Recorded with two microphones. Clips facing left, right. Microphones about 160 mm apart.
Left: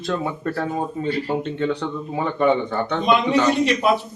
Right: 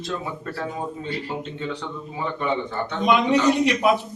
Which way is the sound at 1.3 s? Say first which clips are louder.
Left 7 dB; 55° left (ahead or behind).